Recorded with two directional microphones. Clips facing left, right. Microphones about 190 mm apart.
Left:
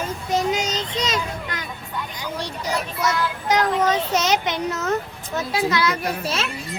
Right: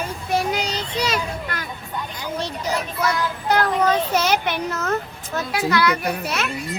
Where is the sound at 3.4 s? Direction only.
20° left (ahead or behind).